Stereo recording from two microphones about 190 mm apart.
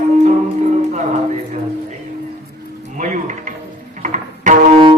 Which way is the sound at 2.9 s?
40° right (ahead or behind).